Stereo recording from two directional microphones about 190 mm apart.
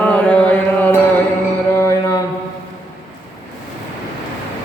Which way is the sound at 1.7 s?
15° left (ahead or behind).